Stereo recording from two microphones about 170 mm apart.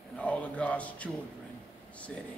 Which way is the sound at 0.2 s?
10° left (ahead or behind).